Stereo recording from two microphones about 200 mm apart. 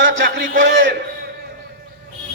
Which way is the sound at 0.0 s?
65° right (ahead or behind).